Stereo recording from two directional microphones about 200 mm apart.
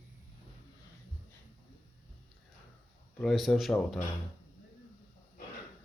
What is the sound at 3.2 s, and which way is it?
Speech, centre (ahead or behind).